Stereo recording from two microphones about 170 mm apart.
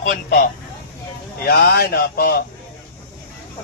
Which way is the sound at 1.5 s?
65° left (ahead or behind).